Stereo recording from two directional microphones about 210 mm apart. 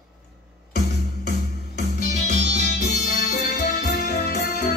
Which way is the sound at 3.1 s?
40° left (ahead or behind).